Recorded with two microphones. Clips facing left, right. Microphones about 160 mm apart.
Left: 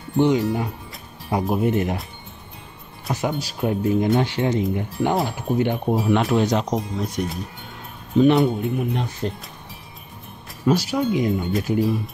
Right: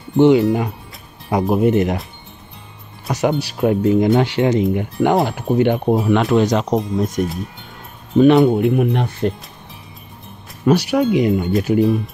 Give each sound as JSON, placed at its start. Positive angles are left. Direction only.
{"t": 0.2, "sound": "speech", "side_deg": -85}
{"t": 3.1, "sound": "speech", "side_deg": -75}
{"t": 4.2, "sound": "speech", "side_deg": -90}
{"t": 6.7, "sound": "speech", "side_deg": -45}
{"t": 8.2, "sound": "speech", "side_deg": -70}
{"t": 10.7, "sound": "speech", "side_deg": -65}